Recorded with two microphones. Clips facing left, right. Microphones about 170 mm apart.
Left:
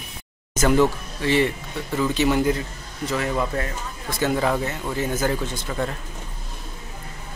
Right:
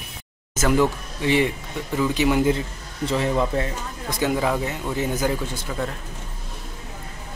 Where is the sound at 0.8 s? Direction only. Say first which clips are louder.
Even; 15° right (ahead or behind).